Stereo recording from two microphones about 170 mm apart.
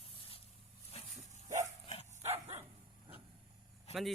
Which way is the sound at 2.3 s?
35° right (ahead or behind).